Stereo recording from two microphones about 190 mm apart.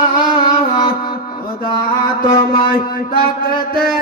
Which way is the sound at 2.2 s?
25° left (ahead or behind).